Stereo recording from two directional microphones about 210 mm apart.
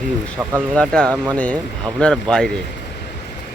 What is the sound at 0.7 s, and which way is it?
Speech, 5° left (ahead or behind).